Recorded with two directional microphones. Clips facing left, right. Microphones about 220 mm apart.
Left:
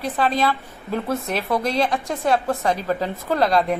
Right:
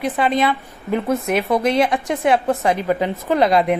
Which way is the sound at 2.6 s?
15° right (ahead or behind).